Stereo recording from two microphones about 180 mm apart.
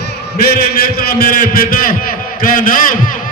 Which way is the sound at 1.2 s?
55° left (ahead or behind).